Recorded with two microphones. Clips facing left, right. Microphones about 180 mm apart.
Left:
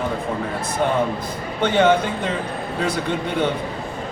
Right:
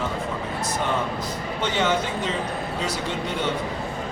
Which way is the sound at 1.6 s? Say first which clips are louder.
Left 7 dB; 55° left (ahead or behind).